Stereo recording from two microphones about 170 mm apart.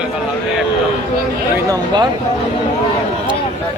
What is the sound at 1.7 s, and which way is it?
Speech, 25° right (ahead or behind).